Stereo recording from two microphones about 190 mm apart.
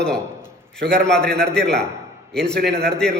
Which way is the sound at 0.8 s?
5° left (ahead or behind).